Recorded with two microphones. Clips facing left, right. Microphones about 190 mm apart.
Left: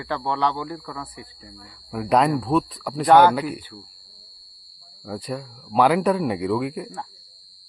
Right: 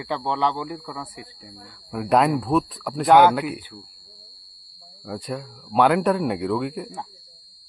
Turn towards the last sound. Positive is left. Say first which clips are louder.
# left 1 dB
turn(degrees=-5)  # may be behind; listen again after turning